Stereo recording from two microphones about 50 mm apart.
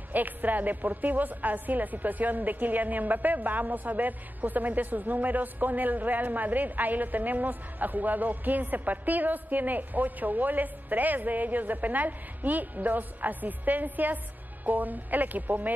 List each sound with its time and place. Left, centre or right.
0.1 s a woman's voice: right